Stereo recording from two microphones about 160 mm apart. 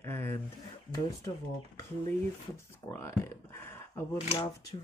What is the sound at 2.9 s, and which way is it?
Speech, 15° left (ahead or behind).